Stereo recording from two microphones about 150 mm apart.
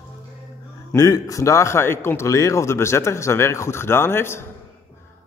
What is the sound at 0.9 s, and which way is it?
A man's voice, 20° left (ahead or behind).